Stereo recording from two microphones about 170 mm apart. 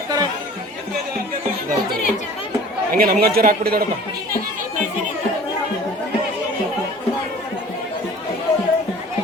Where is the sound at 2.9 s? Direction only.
60° right (ahead or behind).